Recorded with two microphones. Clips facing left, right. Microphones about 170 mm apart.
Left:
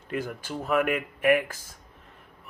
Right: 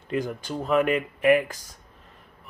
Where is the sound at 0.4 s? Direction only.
5° left (ahead or behind).